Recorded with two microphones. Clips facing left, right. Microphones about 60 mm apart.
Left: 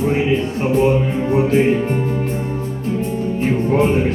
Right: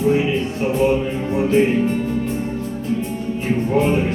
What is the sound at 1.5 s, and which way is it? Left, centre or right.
Music, left.